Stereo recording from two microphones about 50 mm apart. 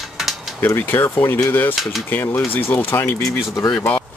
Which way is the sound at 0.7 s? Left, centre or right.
Left.